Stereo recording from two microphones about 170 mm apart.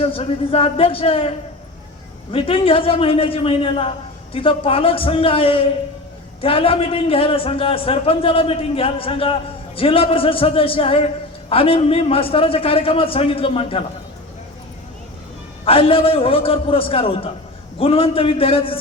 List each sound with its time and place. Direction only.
0.0 s a man's voice: 35° left (ahead or behind)
2.3 s a man's voice: 35° left (ahead or behind)
15.6 s a man's voice: 35° left (ahead or behind)